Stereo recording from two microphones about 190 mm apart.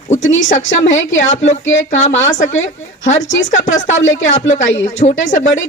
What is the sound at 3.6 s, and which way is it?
Speech, 40° left (ahead or behind).